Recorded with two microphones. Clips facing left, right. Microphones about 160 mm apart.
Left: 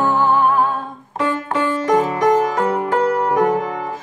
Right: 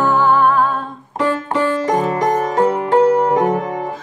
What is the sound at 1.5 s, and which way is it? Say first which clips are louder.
Music: right 1 dB; 30° right (ahead or behind).